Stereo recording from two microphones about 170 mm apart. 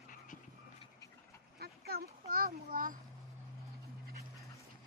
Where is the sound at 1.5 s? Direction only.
65° right (ahead or behind).